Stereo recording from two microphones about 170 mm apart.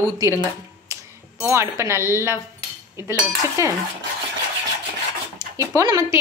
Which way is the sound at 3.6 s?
15° right (ahead or behind).